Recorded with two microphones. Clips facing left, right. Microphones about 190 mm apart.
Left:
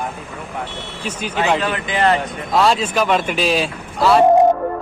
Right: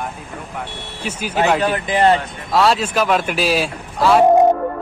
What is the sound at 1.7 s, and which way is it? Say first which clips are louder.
Speech: right 3 dB; 35° right (ahead or behind).